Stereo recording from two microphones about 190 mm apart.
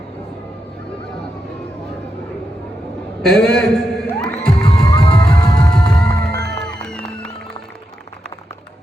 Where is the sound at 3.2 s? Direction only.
5° left (ahead or behind).